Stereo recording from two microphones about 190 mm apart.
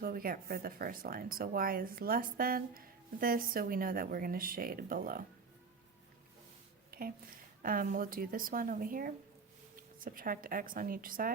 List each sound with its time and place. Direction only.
0.0 s speech: 50° right (ahead or behind)
6.9 s a sound: 50° right (ahead or behind)
7.6 s speech: 45° right (ahead or behind)